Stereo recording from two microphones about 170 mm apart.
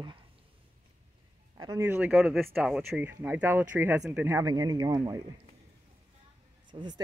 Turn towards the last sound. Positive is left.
turn(degrees=-25)  # may be behind; listen again after turning